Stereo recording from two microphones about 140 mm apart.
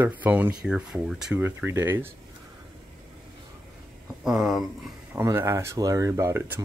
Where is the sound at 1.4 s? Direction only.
15° right (ahead or behind).